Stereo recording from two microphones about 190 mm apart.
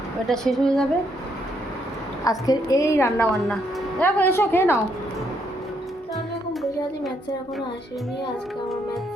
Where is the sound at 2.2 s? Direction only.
20° left (ahead or behind).